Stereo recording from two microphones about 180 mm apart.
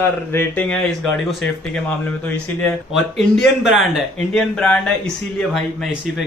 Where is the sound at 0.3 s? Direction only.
10° left (ahead or behind).